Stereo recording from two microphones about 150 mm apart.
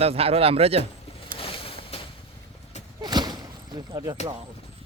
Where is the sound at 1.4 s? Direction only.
40° left (ahead or behind).